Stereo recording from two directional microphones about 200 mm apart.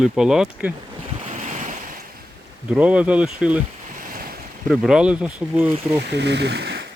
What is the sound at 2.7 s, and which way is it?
Speech, 5° right (ahead or behind).